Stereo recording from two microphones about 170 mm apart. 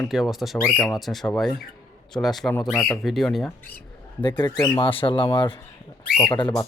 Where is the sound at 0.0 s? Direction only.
Centre (ahead or behind).